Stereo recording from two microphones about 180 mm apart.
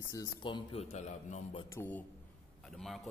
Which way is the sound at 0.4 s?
25° left (ahead or behind).